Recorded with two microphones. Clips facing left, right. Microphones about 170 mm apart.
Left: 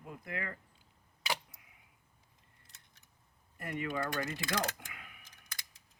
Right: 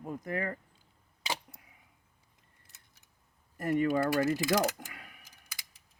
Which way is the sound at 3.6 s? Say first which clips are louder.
Right 10 dB; 40° right (ahead or behind).